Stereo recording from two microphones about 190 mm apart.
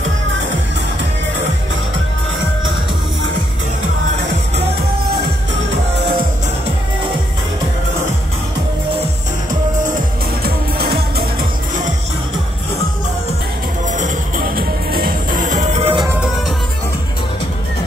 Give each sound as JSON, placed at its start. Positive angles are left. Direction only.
{"t": 10.4, "sound": "music", "side_deg": -55}
{"t": 13.8, "sound": "music", "side_deg": -40}
{"t": 16.1, "sound": "music", "side_deg": -5}